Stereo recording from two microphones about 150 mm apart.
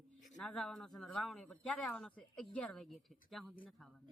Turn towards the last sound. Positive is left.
turn(degrees=0)  # may be behind; listen again after turning